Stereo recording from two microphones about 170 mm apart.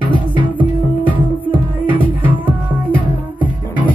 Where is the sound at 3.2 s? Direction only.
10° right (ahead or behind).